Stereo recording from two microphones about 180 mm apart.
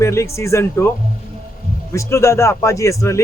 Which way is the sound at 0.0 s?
15° left (ahead or behind).